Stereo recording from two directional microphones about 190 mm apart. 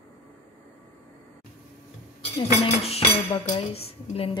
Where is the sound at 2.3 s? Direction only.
30° left (ahead or behind).